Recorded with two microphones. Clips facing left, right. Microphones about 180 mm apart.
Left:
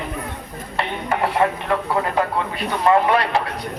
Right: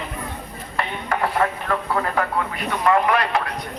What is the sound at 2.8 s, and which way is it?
Speech, 30° left (ahead or behind).